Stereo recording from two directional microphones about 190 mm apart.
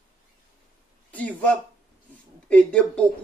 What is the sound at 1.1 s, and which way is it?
Speech, 10° left (ahead or behind).